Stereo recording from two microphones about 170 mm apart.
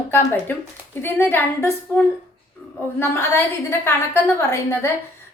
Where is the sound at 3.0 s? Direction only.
15° left (ahead or behind).